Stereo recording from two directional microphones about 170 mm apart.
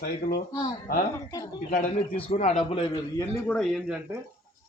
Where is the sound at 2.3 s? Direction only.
35° left (ahead or behind).